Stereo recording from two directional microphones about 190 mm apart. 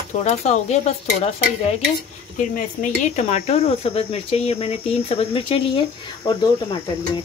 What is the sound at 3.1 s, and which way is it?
Speech, 35° left (ahead or behind).